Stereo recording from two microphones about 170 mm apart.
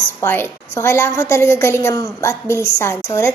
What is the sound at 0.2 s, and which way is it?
A woman's voice, 15° left (ahead or behind).